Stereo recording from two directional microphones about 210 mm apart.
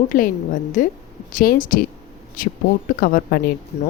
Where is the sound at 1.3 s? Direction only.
40° left (ahead or behind).